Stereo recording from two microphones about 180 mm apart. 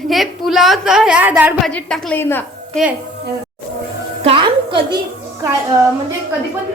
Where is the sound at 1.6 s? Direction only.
5° left (ahead or behind).